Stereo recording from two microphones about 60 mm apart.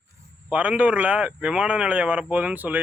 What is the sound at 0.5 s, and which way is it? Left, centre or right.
Speech, right.